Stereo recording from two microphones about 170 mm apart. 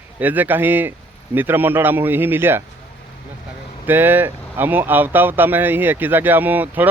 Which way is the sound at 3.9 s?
10° right (ahead or behind).